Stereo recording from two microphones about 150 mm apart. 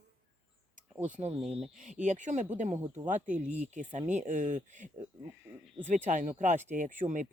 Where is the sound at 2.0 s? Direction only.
55° right (ahead or behind).